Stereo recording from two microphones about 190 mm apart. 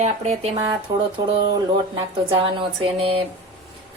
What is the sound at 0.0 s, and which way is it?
Speech, 35° right (ahead or behind).